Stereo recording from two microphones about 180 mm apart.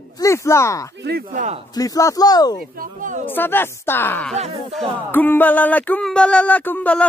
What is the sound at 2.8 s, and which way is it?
Speech, 45° right (ahead or behind).